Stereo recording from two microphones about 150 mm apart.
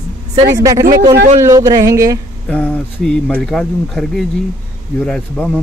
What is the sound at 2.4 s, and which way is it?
A man's voice, 10° left (ahead or behind).